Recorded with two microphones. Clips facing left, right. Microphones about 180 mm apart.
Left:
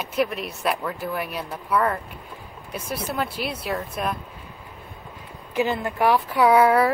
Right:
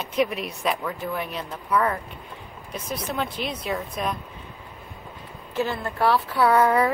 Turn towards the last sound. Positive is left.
turn(degrees=5)  # may be behind; listen again after turning